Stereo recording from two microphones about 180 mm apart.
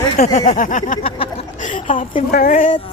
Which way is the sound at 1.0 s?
30° left (ahead or behind).